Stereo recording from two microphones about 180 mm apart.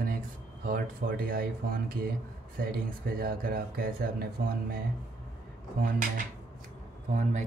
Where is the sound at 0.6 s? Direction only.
50° right (ahead or behind).